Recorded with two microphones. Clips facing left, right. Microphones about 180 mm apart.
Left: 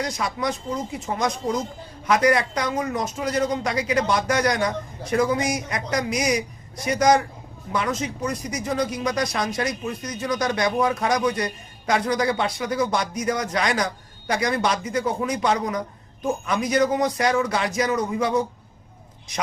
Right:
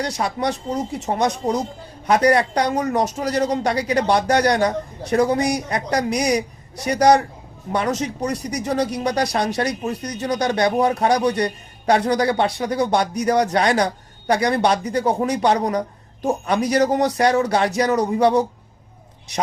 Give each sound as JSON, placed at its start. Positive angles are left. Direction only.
{"t": 0.0, "sound": "speech", "side_deg": -30}